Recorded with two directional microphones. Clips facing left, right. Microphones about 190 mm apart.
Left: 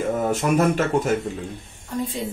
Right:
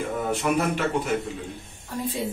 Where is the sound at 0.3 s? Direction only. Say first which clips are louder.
Left 3 dB; 45° left (ahead or behind).